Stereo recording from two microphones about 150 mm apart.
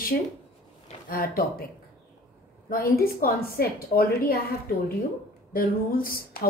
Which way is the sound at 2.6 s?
75° left (ahead or behind).